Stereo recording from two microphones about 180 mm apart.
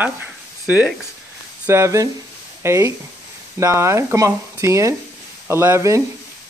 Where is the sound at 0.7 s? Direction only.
10° right (ahead or behind).